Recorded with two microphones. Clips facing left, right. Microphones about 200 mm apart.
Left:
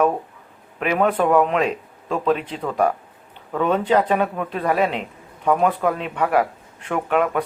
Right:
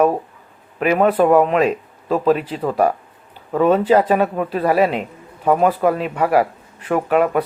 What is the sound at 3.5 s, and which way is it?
Speech, 35° right (ahead or behind).